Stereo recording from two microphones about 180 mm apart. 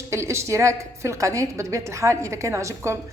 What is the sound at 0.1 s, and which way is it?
A woman's voice, 15° right (ahead or behind).